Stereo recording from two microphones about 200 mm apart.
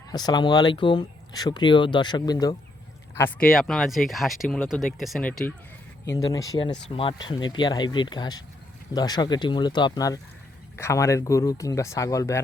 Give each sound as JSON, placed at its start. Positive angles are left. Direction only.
{"t": 0.1, "sound": "speech", "side_deg": 20}
{"t": 3.2, "sound": "speech", "side_deg": 10}
{"t": 6.1, "sound": "speech", "side_deg": 15}